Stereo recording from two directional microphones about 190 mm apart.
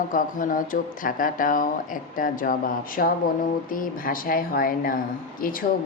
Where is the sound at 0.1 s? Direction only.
45° left (ahead or behind).